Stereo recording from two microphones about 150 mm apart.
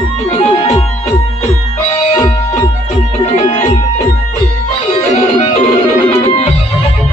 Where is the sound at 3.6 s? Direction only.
50° left (ahead or behind).